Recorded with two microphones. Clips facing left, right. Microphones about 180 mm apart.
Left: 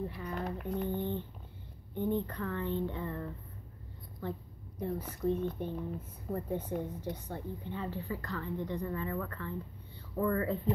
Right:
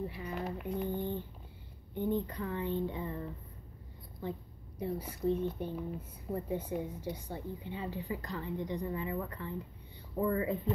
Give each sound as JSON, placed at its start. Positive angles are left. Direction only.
{"t": 0.0, "sound": "a woman's voice", "side_deg": -10}
{"t": 4.2, "sound": "a sound", "side_deg": -10}
{"t": 5.4, "sound": "a woman's voice", "side_deg": -10}